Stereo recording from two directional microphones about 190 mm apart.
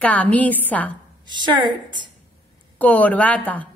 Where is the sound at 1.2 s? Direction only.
25° right (ahead or behind).